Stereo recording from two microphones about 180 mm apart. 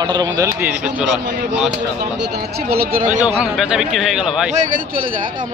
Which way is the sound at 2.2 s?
65° right (ahead or behind).